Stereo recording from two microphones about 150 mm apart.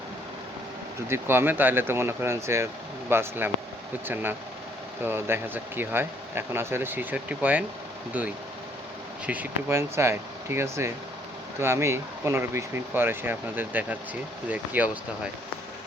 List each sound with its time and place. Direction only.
1.1 s speech: 15° right (ahead or behind)
9.2 s speech: 10° right (ahead or behind)